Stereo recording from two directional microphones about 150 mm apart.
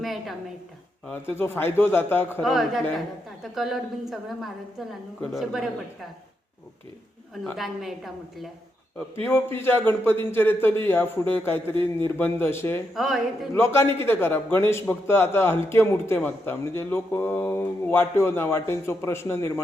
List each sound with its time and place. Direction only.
0.0 s a woman's voice: centre (ahead or behind)
1.0 s a man's voice: 15° left (ahead or behind)
2.4 s a woman's voice: centre (ahead or behind)
7.4 s a woman's voice: centre (ahead or behind)
9.2 s a man's voice: 15° left (ahead or behind)
11.7 s speech: 35° right (ahead or behind)
12.0 s a man's voice: 15° left (ahead or behind)
12.9 s a woman's voice: centre (ahead or behind)
13.7 s a man's voice: 15° left (ahead or behind)